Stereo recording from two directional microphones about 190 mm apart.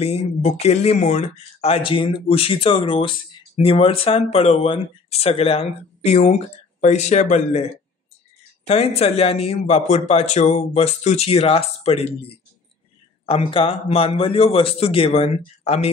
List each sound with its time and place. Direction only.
0.0 s a man's voice: 35° left (ahead or behind)